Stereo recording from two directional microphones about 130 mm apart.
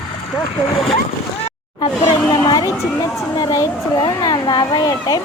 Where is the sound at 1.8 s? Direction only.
30° left (ahead or behind).